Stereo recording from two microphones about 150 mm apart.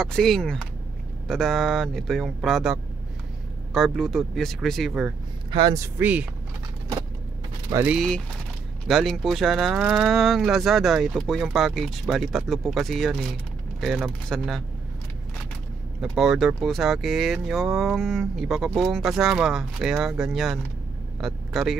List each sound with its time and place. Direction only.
0.0 s speech: 5° left (ahead or behind)
5.5 s speech: 35° right (ahead or behind)
5.8 s speech: 10° right (ahead or behind)
7.7 s speech: 10° right (ahead or behind)
8.8 s speech: centre (ahead or behind)
16.0 s speech: centre (ahead or behind)